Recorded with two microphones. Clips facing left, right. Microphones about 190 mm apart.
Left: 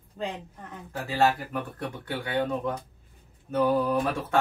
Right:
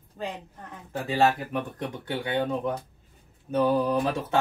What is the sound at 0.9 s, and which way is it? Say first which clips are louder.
Speech: right 1 dB; 20° right (ahead or behind).